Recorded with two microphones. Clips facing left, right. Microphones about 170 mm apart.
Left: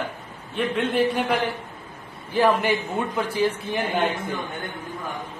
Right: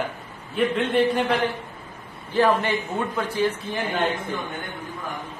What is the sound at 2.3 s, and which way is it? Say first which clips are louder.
Speech: even; 15° left (ahead or behind).